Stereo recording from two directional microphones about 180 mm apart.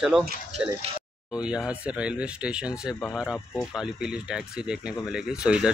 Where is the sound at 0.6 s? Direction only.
5° right (ahead or behind).